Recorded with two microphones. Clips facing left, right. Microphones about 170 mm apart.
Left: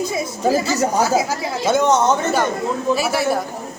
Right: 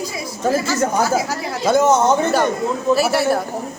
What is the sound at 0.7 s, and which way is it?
Speech, 20° left (ahead or behind).